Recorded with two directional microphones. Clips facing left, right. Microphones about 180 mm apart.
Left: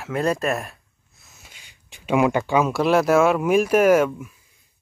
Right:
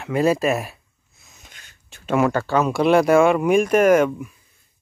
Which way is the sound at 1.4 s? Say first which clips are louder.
Right 1 dB; 10° left (ahead or behind).